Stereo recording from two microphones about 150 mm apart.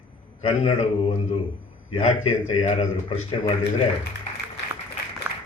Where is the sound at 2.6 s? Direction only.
50° left (ahead or behind).